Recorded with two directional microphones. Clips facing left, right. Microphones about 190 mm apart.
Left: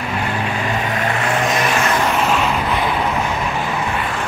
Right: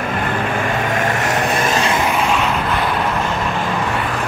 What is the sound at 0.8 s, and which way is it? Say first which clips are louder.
Vehicle: right 1 dB; 45° right (ahead or behind).